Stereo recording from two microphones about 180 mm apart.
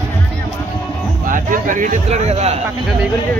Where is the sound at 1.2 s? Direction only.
50° right (ahead or behind).